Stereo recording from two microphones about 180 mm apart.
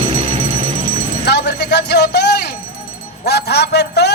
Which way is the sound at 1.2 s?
65° left (ahead or behind).